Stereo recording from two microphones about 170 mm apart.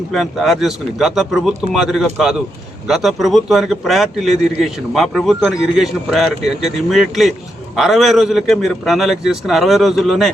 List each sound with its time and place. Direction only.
0.1 s a man's voice: centre (ahead or behind)